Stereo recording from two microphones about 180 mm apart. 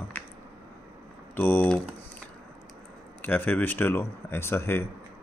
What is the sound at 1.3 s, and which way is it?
Speech, 10° left (ahead or behind).